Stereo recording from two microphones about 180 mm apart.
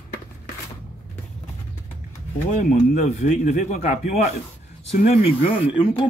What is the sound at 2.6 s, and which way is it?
A man's voice, 45° left (ahead or behind).